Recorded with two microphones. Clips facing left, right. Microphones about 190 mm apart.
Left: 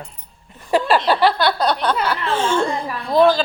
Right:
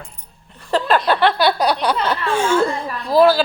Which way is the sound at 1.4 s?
20° right (ahead or behind).